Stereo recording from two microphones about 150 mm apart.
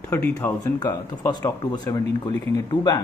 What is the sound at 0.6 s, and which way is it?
Speech, 25° left (ahead or behind).